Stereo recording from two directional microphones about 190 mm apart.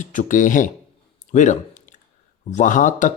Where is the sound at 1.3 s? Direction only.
40° left (ahead or behind).